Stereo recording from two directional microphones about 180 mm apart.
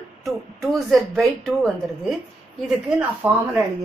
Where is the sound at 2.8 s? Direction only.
10° right (ahead or behind).